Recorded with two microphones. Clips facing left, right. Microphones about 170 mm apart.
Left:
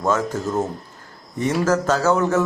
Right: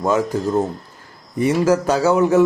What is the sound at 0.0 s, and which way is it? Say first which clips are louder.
Speech: right 3 dB; 10° right (ahead or behind).